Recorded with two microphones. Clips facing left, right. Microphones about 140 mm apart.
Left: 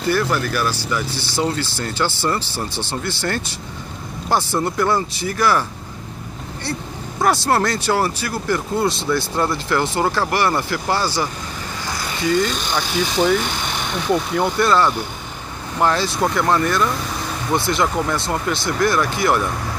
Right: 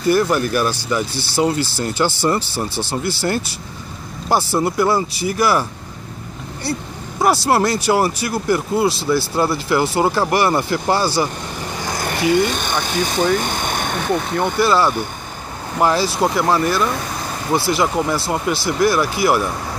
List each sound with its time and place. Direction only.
0.1 s speech: 15° right (ahead or behind)
7.2 s speech: 10° right (ahead or behind)
12.0 s speech: 60° right (ahead or behind)
13.4 s a sound: 50° right (ahead or behind)
14.6 s speech: 5° right (ahead or behind)